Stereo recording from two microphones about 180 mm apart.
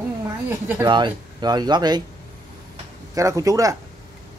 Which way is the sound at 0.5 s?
10° right (ahead or behind).